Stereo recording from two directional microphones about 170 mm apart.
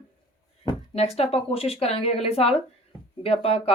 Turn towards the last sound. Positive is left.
turn(degrees=35)  # may be behind; listen again after turning